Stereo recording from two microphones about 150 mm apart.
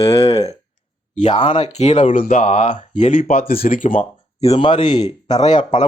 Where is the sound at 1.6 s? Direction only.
50° left (ahead or behind).